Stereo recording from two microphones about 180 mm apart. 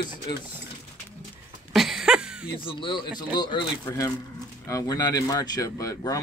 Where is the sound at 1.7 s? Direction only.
Centre (ahead or behind).